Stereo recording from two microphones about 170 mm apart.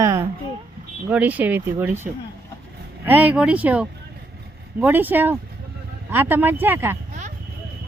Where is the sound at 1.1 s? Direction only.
10° right (ahead or behind).